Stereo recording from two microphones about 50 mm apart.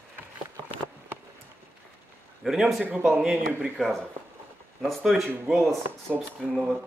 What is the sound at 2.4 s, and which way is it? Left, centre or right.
Speech, centre.